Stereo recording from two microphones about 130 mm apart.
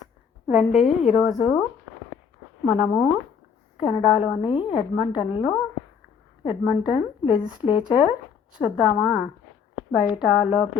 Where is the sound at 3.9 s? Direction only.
10° right (ahead or behind).